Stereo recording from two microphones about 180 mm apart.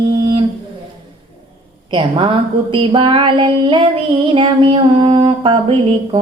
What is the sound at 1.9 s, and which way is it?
Speech, 25° right (ahead or behind).